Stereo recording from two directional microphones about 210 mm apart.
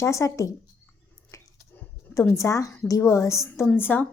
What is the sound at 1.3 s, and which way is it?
Squish, 15° left (ahead or behind).